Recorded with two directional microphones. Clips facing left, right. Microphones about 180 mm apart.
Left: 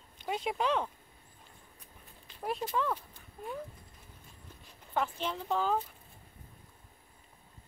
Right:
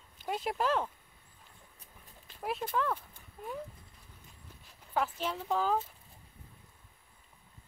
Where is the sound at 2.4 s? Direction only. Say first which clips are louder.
Even; centre (ahead or behind).